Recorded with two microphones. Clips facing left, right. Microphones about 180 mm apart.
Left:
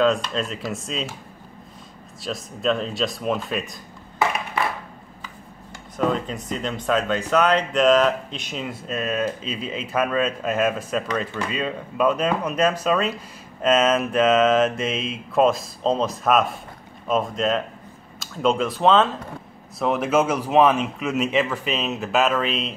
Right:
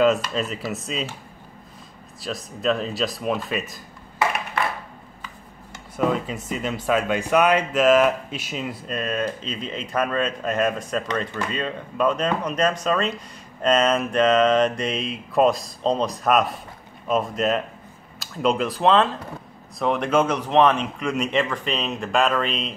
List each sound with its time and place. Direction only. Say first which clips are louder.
0.0 s speech: right 1 dB; 5° right (ahead or behind)
2.2 s speech: even; centre (ahead or behind)
5.9 s speech: even; 5° right (ahead or behind)